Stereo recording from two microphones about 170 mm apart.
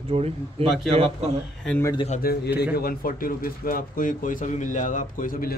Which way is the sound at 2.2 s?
65° left (ahead or behind).